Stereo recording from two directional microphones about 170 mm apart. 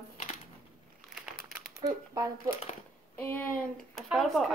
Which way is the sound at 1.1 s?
Centre (ahead or behind).